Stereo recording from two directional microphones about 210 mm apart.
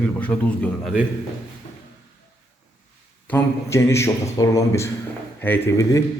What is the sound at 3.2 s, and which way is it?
A man's voice, 10° left (ahead or behind).